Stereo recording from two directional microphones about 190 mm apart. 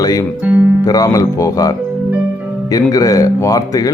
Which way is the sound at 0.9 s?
20° left (ahead or behind).